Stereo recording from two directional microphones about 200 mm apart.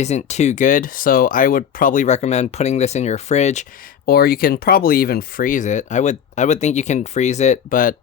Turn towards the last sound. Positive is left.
turn(degrees=45)  # may be behind; listen again after turning